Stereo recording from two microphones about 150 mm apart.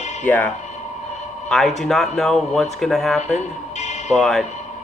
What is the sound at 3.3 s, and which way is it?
Music, 50° left (ahead or behind).